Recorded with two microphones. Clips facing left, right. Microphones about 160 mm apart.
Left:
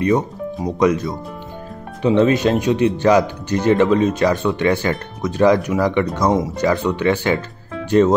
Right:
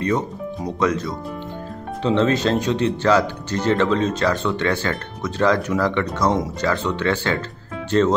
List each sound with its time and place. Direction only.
0.7 s speech: 15° left (ahead or behind)